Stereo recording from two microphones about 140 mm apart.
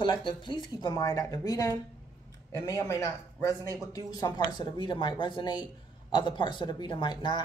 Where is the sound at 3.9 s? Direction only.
30° left (ahead or behind).